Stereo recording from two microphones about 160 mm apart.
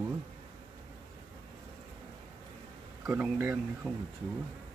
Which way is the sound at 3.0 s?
10° right (ahead or behind).